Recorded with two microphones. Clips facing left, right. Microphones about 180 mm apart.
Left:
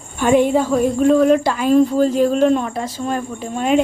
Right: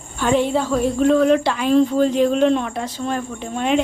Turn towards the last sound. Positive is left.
turn(degrees=5)  # may be behind; listen again after turning